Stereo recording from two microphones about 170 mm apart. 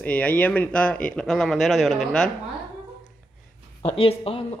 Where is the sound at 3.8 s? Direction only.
35° left (ahead or behind).